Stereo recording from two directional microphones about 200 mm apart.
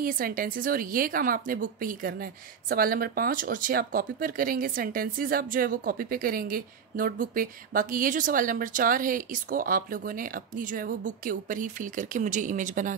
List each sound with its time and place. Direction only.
0.0 s a woman's voice: 45° right (ahead or behind)